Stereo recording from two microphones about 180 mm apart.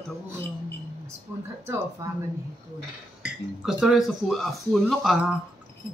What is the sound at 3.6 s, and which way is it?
Speech, 5° right (ahead or behind).